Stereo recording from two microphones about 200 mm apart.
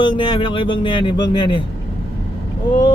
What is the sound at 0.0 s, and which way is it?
Speech, 25° left (ahead or behind).